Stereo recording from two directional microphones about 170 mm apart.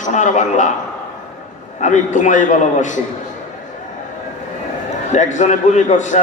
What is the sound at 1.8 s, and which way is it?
A man's voice, 45° left (ahead or behind).